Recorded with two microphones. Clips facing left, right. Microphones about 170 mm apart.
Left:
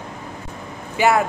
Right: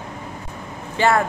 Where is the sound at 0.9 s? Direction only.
10° left (ahead or behind).